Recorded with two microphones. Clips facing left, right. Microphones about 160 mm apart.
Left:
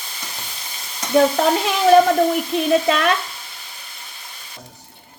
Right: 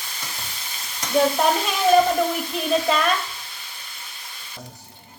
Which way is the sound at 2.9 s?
70° left (ahead or behind).